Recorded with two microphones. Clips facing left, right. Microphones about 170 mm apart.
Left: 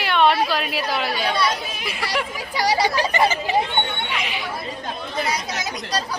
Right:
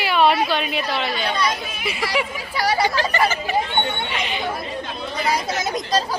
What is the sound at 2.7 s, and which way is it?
Speech, 15° left (ahead or behind).